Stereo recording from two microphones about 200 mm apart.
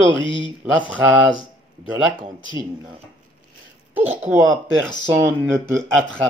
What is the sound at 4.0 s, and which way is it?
Speech, 10° right (ahead or behind).